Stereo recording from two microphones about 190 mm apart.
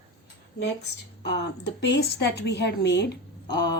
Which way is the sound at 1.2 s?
65° left (ahead or behind).